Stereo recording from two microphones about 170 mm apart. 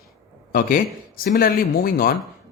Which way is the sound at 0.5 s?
55° left (ahead or behind).